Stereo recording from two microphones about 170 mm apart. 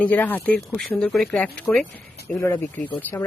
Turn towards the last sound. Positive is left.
turn(degrees=10)  # may be behind; listen again after turning